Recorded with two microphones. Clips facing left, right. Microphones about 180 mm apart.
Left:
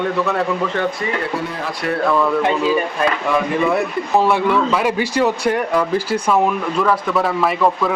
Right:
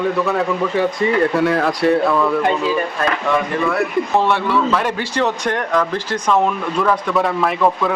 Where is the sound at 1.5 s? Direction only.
65° right (ahead or behind).